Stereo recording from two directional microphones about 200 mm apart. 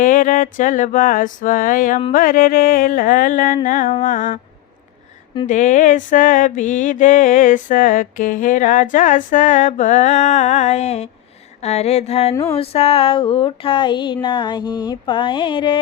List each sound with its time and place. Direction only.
0.0 s mantra: 40° left (ahead or behind)
5.5 s mantra: 40° left (ahead or behind)
12.5 s a sound: 30° left (ahead or behind)